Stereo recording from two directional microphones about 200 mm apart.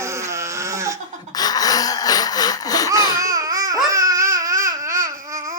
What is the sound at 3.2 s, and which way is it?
Babbling, 15° right (ahead or behind).